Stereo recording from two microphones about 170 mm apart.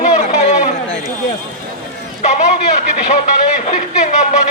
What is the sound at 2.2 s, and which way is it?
Speech, 40° left (ahead or behind).